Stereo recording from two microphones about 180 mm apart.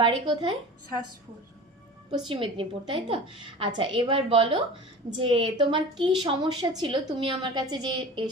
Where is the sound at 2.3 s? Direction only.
30° right (ahead or behind).